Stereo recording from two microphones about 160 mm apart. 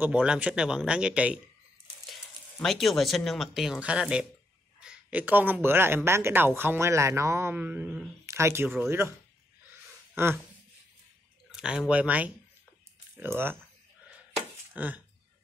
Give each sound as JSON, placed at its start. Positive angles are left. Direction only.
{"t": 0.0, "sound": "speech", "side_deg": -5}
{"t": 2.6, "sound": "speech", "side_deg": 0}
{"t": 10.1, "sound": "speech", "side_deg": -15}
{"t": 11.5, "sound": "speech", "side_deg": -5}
{"t": 14.7, "sound": "speech", "side_deg": -10}